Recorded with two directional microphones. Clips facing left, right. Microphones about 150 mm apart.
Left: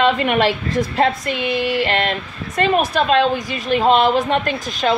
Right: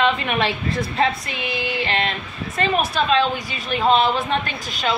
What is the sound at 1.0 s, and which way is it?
Female singing, 60° left (ahead or behind).